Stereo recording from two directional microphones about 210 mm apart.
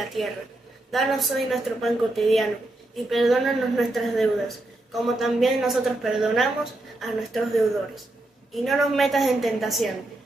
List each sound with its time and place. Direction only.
0.0 s a woman's voice: centre (ahead or behind)